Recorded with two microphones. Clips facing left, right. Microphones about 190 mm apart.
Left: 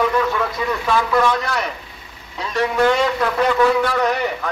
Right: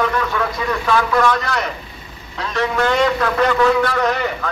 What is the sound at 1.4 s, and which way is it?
A man's voice, 5° left (ahead or behind).